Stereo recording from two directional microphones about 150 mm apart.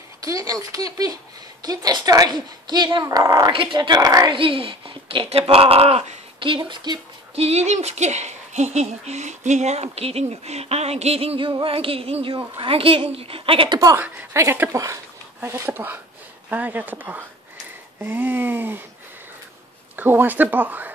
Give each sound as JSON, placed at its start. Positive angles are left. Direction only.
{"t": 0.2, "sound": "speech", "side_deg": -20}
{"t": 7.3, "sound": "speech", "side_deg": -45}
{"t": 13.7, "sound": "speech", "side_deg": -15}
{"t": 20.0, "sound": "speech", "side_deg": -10}